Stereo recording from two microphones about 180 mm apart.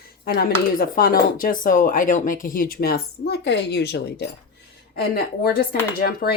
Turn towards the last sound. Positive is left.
turn(degrees=60)  # may be behind; listen again after turning